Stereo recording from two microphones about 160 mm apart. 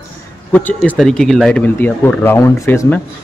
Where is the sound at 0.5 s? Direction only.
10° left (ahead or behind).